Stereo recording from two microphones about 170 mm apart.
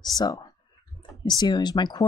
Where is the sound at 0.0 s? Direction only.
25° left (ahead or behind).